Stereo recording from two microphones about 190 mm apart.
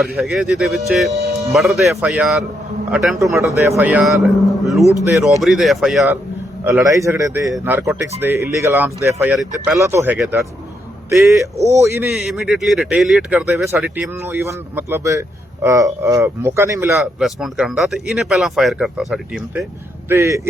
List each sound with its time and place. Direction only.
0.2 s speech: centre (ahead or behind)
3.4 s speech: 15° right (ahead or behind)
6.7 s speech: 15° right (ahead or behind)
12.1 s speech: 5° right (ahead or behind)
17.2 s speech: centre (ahead or behind)
20.1 s speech: 15° right (ahead or behind)